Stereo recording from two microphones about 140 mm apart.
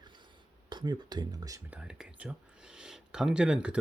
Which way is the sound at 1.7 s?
5° right (ahead or behind).